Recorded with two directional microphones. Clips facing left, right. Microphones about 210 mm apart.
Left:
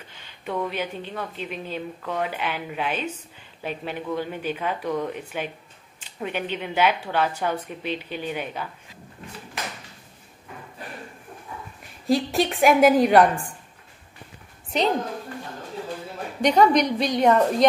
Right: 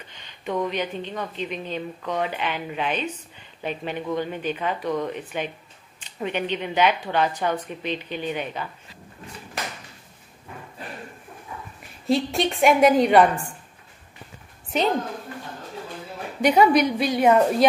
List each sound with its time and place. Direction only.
0.1 s a woman's voice: 5° left (ahead or behind)
12.1 s a woman's voice: centre (ahead or behind)
16.3 s a woman's voice: 5° right (ahead or behind)